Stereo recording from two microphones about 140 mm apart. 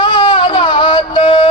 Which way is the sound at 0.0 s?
35° left (ahead or behind).